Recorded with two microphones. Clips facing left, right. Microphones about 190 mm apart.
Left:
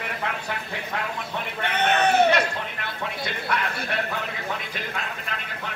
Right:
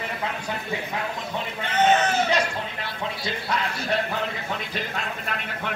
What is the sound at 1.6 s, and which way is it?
Sheep, 60° left (ahead or behind).